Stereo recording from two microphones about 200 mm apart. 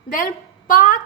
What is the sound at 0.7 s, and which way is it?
Speech, 45° left (ahead or behind).